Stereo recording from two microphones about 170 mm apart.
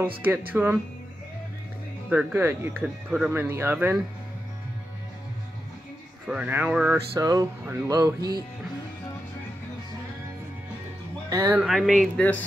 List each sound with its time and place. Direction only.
0.5 s speech: 10° right (ahead or behind)
2.0 s speech: 10° right (ahead or behind)
6.2 s speech: 10° right (ahead or behind)
7.2 s music: 20° right (ahead or behind)
11.2 s speech: 20° right (ahead or behind)
11.6 s speech: centre (ahead or behind)